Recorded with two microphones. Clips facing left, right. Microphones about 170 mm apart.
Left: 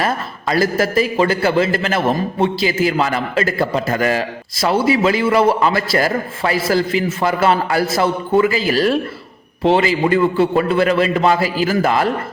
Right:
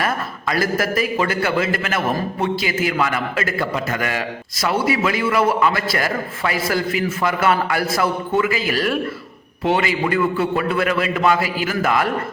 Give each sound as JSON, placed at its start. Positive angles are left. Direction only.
{"t": 0.0, "sound": "a man's voice", "side_deg": 30}